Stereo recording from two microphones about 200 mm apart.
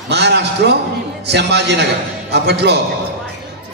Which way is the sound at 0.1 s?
60° right (ahead or behind).